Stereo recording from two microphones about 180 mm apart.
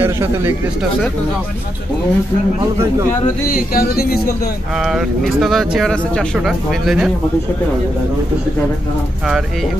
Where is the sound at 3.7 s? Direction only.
55° left (ahead or behind).